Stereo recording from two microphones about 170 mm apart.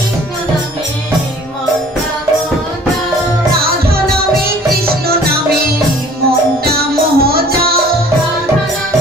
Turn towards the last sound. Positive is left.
turn(degrees=-65)  # may be behind; listen again after turning